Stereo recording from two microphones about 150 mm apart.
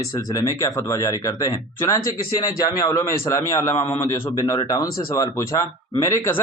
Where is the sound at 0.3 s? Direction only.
25° left (ahead or behind).